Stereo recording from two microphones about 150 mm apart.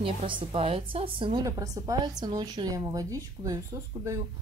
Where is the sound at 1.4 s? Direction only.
25° right (ahead or behind).